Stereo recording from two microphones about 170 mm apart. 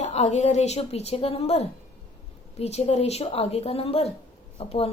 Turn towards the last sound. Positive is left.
turn(degrees=35)  # may be behind; listen again after turning